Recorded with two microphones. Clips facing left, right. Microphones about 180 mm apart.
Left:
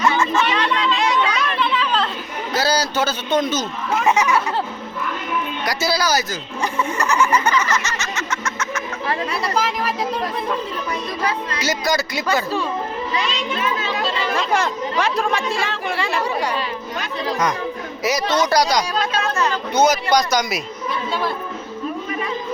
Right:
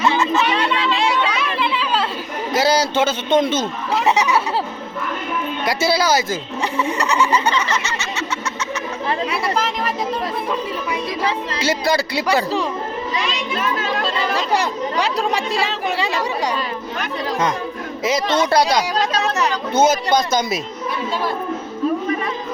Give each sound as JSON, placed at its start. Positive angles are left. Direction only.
{"t": 0.0, "sound": "a sound", "side_deg": -25}
{"t": 1.1, "sound": "children playing", "side_deg": -5}
{"t": 2.5, "sound": "a man's voice", "side_deg": -25}
{"t": 5.6, "sound": "speech", "side_deg": -25}
{"t": 9.3, "sound": "speech", "side_deg": 0}
{"t": 11.5, "sound": "speech", "side_deg": -30}
{"t": 15.1, "sound": "speech", "side_deg": -35}
{"t": 18.0, "sound": "speech", "side_deg": -25}